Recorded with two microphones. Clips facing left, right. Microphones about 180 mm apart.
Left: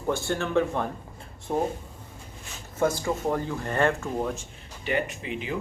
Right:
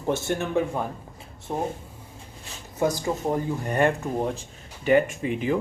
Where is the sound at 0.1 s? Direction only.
20° right (ahead or behind).